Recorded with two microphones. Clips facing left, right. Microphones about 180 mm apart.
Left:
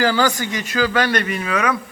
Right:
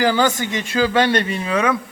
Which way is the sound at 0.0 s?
20° right (ahead or behind).